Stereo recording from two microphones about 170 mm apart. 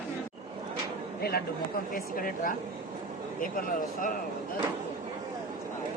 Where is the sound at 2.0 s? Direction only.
55° left (ahead or behind).